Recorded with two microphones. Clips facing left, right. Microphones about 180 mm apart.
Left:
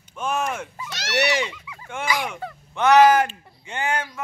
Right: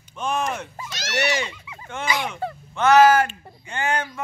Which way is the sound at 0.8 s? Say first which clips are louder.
Even; 65° left (ahead or behind).